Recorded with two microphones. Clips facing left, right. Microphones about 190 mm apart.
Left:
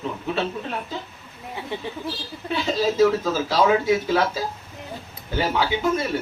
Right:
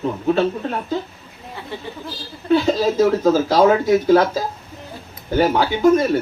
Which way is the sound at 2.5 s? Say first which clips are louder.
Right 7 dB; 40° right (ahead or behind).